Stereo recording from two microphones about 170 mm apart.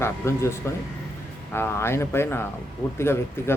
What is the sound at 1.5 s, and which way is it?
Speech, 15° left (ahead or behind).